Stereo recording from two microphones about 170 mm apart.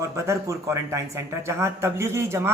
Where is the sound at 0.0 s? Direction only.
15° right (ahead or behind).